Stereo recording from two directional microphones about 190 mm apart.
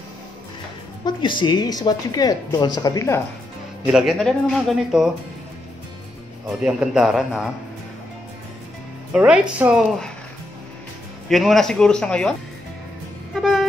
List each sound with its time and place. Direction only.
1.0 s a woman's voice: 25° left (ahead or behind)
3.8 s a man's voice: centre (ahead or behind)
6.6 s a man's voice: 5° right (ahead or behind)
9.1 s a man's voice: 5° right (ahead or behind)
11.2 s a man's voice: centre (ahead or behind)
13.3 s music: centre (ahead or behind)